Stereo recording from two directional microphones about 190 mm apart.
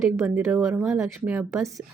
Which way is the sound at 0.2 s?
10° right (ahead or behind).